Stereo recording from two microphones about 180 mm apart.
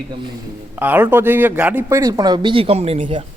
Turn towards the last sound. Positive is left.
turn(degrees=-35)  # may be behind; listen again after turning